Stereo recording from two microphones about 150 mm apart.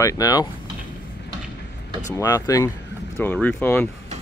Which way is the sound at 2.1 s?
20° left (ahead or behind).